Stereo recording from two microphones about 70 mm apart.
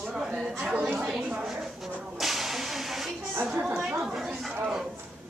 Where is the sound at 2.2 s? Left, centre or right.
Centre.